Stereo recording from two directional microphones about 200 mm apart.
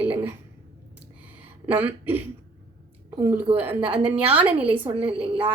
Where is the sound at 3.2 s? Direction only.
10° right (ahead or behind).